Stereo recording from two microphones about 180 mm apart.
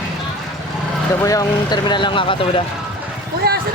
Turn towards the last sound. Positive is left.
turn(degrees=-60)  # may be behind; listen again after turning